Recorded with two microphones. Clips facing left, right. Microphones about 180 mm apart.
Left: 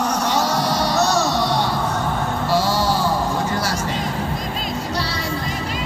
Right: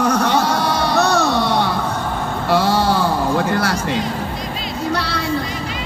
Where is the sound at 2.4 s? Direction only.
60° right (ahead or behind).